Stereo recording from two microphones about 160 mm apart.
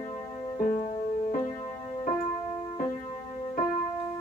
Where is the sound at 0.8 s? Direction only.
55° left (ahead or behind).